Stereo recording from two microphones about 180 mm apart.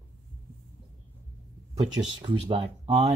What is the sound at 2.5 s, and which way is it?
Speech, 35° right (ahead or behind).